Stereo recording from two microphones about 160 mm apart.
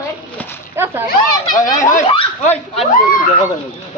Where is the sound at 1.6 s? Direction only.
50° left (ahead or behind).